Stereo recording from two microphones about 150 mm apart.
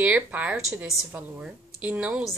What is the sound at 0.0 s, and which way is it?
A woman's voice, 10° right (ahead or behind).